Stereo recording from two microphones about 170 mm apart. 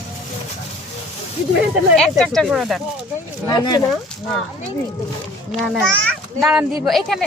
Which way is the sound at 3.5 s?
25° left (ahead or behind).